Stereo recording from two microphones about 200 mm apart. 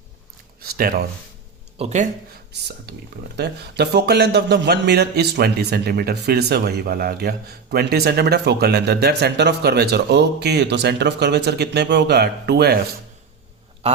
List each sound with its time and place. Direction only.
0.6 s speech: 50° right (ahead or behind)
1.8 s speech: 35° right (ahead or behind)
2.5 s speech: 55° right (ahead or behind)